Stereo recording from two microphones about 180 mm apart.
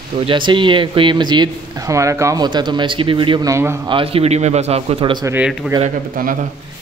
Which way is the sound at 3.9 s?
30° right (ahead or behind).